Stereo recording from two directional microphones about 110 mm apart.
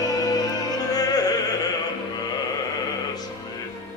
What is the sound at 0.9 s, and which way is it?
Opera, 35° left (ahead or behind).